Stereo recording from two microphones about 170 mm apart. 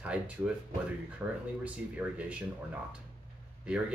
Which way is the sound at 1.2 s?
15° right (ahead or behind).